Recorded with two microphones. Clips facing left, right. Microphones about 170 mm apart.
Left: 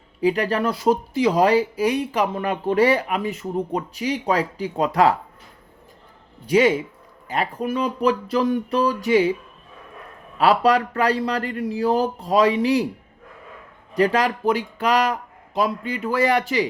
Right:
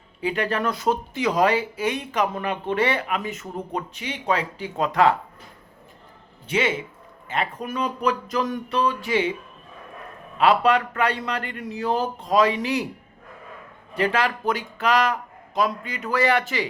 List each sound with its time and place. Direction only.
0.2 s speech: 35° left (ahead or behind)
6.4 s speech: 40° left (ahead or behind)
10.4 s speech: 35° left (ahead or behind)
13.9 s speech: 35° left (ahead or behind)